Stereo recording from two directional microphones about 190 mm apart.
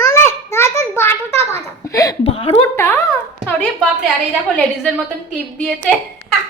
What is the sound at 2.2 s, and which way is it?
Speech, 30° left (ahead or behind).